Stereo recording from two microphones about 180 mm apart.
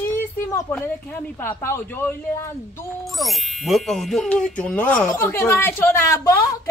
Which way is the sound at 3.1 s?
Centre (ahead or behind).